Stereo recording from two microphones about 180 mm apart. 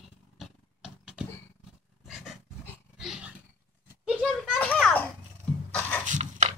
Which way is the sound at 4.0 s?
5° right (ahead or behind).